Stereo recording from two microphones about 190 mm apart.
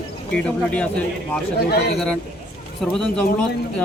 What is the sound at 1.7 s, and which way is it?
Speech, 60° left (ahead or behind).